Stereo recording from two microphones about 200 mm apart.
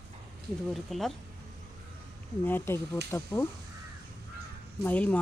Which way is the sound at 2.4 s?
10° left (ahead or behind).